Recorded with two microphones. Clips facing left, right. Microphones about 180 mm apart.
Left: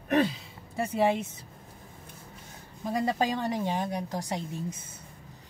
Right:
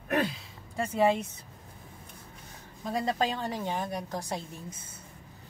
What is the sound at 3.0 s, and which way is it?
Speech, 10° left (ahead or behind).